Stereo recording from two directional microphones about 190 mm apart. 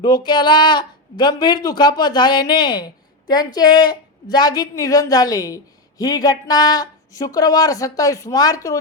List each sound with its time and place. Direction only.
0.0 s speech: 20° left (ahead or behind)